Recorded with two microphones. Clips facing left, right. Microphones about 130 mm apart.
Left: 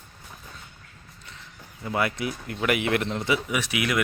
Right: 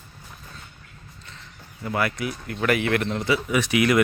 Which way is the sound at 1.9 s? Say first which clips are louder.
Right 1 dB; 20° left (ahead or behind).